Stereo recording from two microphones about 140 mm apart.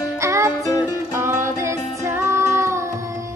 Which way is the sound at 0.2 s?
20° right (ahead or behind).